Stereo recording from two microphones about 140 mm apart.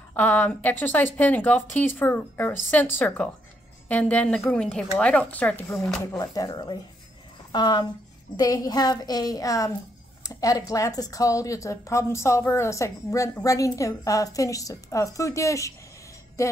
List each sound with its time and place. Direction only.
0.1 s a woman's voice: 10° left (ahead or behind)
6.1 s a woman's voice: 25° left (ahead or behind)